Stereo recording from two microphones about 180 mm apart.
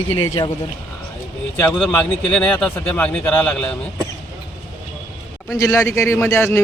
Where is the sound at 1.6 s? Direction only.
Centre (ahead or behind).